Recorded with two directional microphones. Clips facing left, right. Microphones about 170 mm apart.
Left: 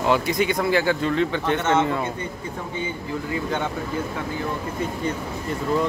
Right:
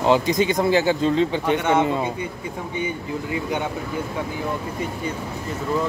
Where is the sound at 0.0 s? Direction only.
25° right (ahead or behind).